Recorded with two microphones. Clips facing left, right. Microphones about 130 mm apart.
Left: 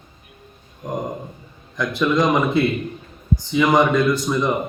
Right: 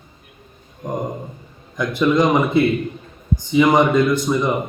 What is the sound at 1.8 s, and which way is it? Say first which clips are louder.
Speech: right 2 dB; 10° right (ahead or behind).